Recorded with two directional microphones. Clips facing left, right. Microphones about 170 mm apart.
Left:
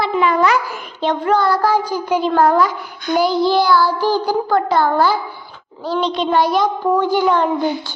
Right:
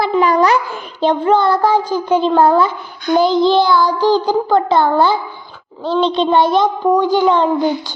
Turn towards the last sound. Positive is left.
turn(degrees=-20)  # may be behind; listen again after turning